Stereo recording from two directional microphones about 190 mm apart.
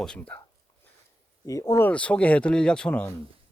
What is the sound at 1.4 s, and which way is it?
Speech, 15° left (ahead or behind).